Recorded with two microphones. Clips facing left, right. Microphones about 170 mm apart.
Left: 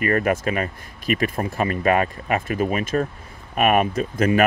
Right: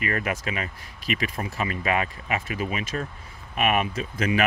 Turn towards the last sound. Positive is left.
turn(degrees=45)  # may be behind; listen again after turning